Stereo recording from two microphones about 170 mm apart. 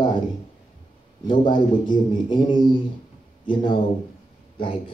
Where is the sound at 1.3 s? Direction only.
25° left (ahead or behind).